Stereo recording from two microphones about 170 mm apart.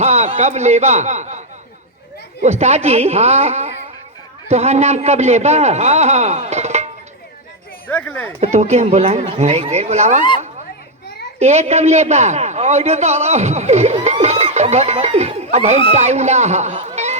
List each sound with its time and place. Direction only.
0.0 s a man's voice: 40° right (ahead or behind)
7.9 s speech: 10° left (ahead or behind)
8.5 s a man's voice: 40° right (ahead or behind)
11.3 s a man's voice: 40° right (ahead or behind)